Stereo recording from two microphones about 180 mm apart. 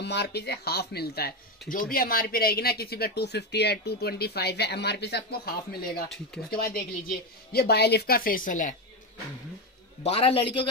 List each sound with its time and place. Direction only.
0.0 s speech: 65° left (ahead or behind)
6.0 s speech: centre (ahead or behind)
6.5 s speech: 55° left (ahead or behind)
10.0 s a man's voice: 30° left (ahead or behind)